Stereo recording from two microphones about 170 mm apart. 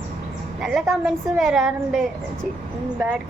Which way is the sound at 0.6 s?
5° right (ahead or behind).